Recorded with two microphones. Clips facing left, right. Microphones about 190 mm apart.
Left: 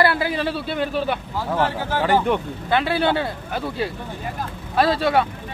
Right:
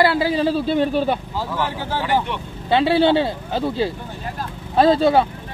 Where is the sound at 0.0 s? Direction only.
25° right (ahead or behind).